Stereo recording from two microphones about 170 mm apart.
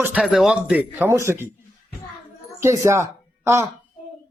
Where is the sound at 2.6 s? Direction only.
15° right (ahead or behind).